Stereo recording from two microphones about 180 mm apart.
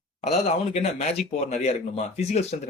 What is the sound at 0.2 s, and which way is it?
Speech, 35° left (ahead or behind).